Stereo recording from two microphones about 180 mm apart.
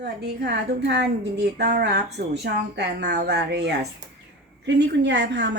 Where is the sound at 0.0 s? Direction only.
70° right (ahead or behind).